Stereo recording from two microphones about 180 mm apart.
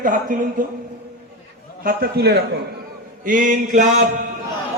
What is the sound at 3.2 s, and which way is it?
A man's voice, 45° right (ahead or behind).